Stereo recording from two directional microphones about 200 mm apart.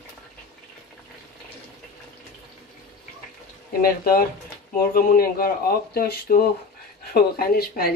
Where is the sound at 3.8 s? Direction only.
50° left (ahead or behind).